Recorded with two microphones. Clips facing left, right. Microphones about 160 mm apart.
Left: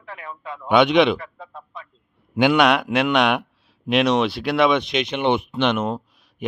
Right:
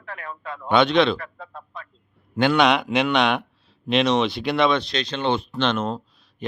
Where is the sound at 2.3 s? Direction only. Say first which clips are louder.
Left 2 dB; 15° left (ahead or behind).